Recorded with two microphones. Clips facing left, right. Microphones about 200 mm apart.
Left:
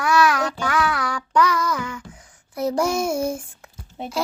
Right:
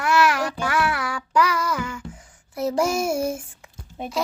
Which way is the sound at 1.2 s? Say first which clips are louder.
Left 2 dB; 25° right (ahead or behind).